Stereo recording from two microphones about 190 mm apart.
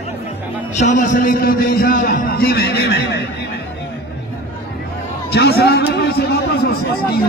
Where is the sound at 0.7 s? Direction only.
40° left (ahead or behind); by 3.4 s 60° left (ahead or behind).